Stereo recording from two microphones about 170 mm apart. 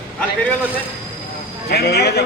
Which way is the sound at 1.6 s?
70° left (ahead or behind).